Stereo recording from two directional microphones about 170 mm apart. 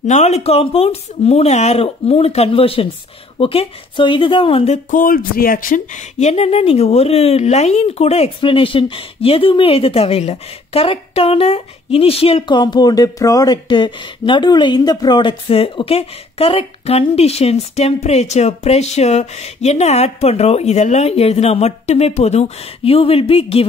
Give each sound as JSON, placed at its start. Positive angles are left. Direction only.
{"t": 0.0, "sound": "speech", "side_deg": 40}
{"t": 4.9, "sound": "speech", "side_deg": 55}